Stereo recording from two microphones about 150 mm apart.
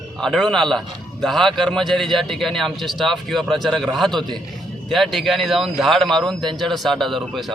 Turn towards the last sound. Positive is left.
turn(degrees=0)  # may be behind; listen again after turning